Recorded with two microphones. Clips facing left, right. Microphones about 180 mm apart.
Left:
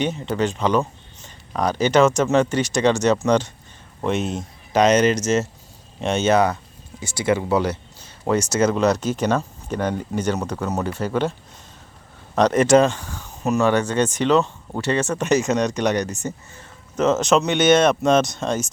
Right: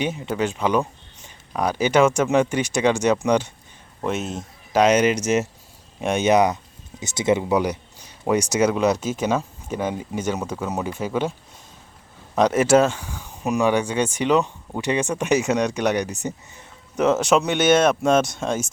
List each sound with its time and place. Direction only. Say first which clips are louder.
0.0 s speech: left 2 dB; 10° right (ahead or behind)